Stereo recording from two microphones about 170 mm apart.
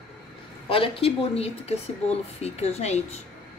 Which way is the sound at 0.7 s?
35° left (ahead or behind).